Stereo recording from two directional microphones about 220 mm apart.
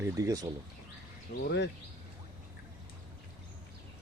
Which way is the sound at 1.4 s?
50° left (ahead or behind).